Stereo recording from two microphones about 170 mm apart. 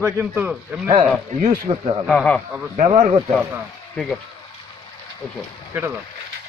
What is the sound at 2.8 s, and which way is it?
Speech, 45° right (ahead or behind).